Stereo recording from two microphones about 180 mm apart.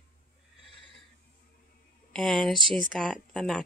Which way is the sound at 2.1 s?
Centre (ahead or behind).